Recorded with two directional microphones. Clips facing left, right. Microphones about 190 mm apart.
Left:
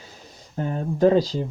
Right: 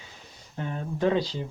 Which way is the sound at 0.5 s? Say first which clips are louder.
Left 6 dB; 40° left (ahead or behind).